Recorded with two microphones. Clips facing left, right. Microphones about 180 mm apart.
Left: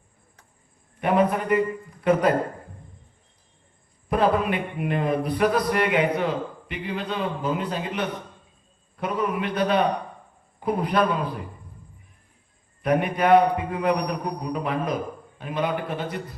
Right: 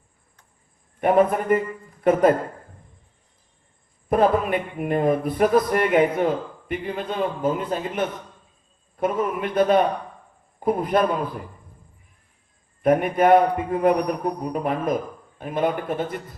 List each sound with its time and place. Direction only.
1.0 s speech: 50° right (ahead or behind)
4.1 s speech: 50° right (ahead or behind)
12.8 s speech: 50° right (ahead or behind)